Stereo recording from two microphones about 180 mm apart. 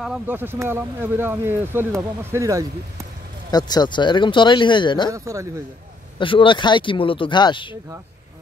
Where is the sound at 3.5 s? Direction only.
20° left (ahead or behind).